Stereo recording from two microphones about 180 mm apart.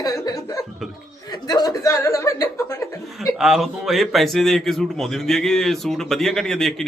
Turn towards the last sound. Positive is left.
turn(degrees=5)  # may be behind; listen again after turning